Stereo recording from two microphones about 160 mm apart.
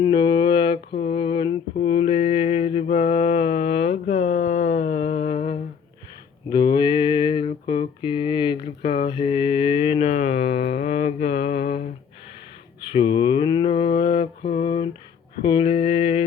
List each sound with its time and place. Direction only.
0.0 s mantra: 30° left (ahead or behind)
6.5 s a sound: 30° left (ahead or behind)
10.7 s mantra: 45° left (ahead or behind)
12.9 s mantra: 35° left (ahead or behind)